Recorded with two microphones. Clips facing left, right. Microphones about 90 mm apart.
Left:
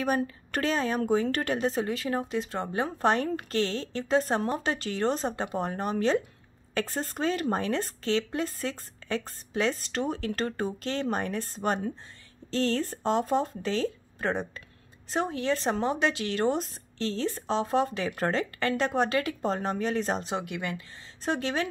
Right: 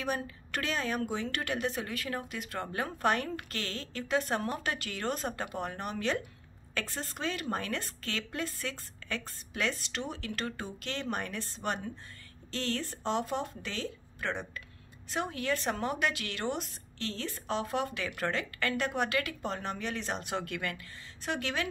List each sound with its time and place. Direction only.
0.0 s a woman's voice: 40° left (ahead or behind)
20.2 s speech: 20° left (ahead or behind)
21.2 s a woman's voice: 35° left (ahead or behind)